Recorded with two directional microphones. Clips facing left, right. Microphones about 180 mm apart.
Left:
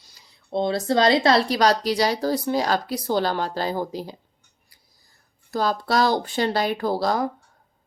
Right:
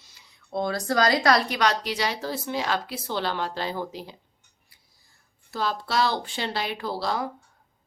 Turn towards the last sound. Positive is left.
turn(degrees=45)  # may be behind; listen again after turning